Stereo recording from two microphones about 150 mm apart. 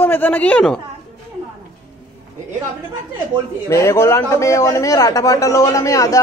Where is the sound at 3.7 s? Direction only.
20° left (ahead or behind).